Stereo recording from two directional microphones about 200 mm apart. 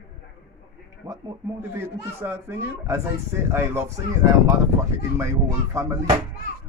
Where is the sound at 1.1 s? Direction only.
15° right (ahead or behind).